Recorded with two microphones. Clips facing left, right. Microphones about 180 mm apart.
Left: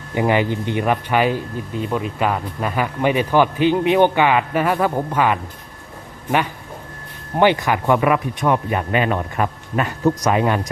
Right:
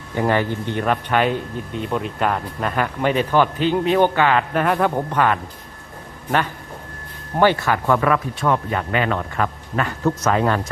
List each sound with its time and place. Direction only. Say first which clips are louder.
0.1 s speech: left 2 dB; 15° left (ahead or behind)
7.3 s speech: left 1 dB; 15° left (ahead or behind)